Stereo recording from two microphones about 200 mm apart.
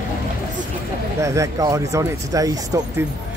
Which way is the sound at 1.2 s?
15° right (ahead or behind).